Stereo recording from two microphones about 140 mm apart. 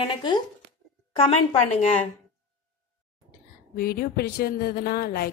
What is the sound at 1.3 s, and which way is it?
Speech, 50° left (ahead or behind).